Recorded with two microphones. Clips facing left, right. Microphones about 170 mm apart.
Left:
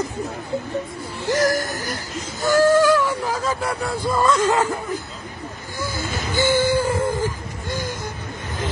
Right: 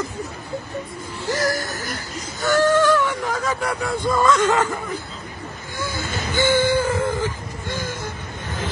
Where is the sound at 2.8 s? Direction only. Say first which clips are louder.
Left 1 dB; 10° left (ahead or behind).